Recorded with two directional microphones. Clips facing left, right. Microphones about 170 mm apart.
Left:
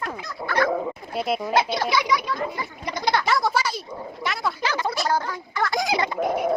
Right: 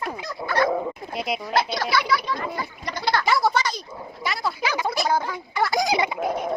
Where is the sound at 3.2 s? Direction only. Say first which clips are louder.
Right 1 dB; centre (ahead or behind).